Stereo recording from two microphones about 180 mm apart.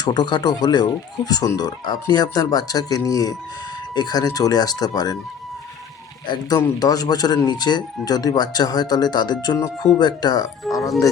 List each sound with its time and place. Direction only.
0.0 s speech: 25° left (ahead or behind)
6.2 s speech: 25° left (ahead or behind)